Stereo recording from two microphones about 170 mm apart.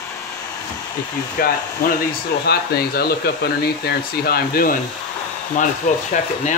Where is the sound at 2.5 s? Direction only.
65° left (ahead or behind).